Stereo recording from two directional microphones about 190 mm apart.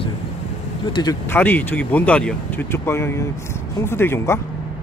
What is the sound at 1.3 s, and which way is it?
Speech, 10° left (ahead or behind).